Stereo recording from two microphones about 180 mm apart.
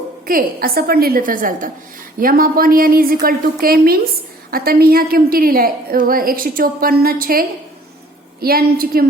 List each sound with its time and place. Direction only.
0.3 s a woman's voice: 55° right (ahead or behind)